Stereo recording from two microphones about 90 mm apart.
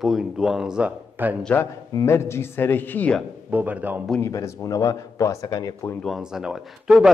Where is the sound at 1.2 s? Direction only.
20° right (ahead or behind).